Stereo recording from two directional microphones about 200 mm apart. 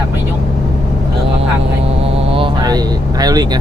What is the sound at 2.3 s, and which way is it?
Speech, 25° right (ahead or behind).